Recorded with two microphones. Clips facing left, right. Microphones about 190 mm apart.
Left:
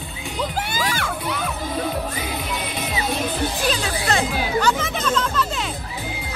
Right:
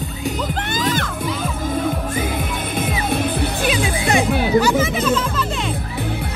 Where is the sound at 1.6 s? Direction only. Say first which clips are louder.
Right 5 dB; 50° right (ahead or behind).